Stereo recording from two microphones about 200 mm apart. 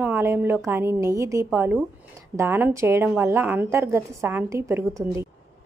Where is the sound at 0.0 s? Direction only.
10° right (ahead or behind).